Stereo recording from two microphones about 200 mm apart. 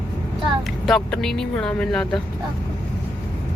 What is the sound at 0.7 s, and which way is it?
Speech, centre (ahead or behind).